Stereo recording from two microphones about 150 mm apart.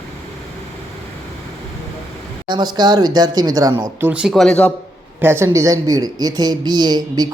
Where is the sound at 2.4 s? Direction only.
30° right (ahead or behind); by 4.7 s 5° left (ahead or behind).